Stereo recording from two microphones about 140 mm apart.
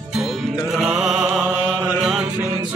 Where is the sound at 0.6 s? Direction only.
Centre (ahead or behind).